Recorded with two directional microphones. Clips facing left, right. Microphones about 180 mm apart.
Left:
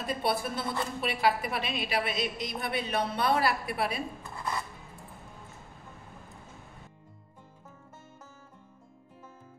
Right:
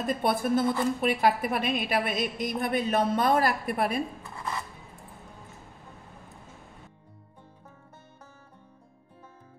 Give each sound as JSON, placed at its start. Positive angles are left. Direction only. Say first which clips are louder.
{"t": 0.0, "sound": "a woman's voice", "louder": "right 4 dB", "side_deg": -50}